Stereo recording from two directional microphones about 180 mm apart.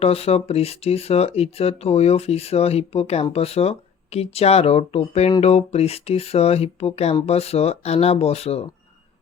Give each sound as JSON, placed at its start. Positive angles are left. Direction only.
{"t": 0.0, "sound": "speech", "side_deg": 35}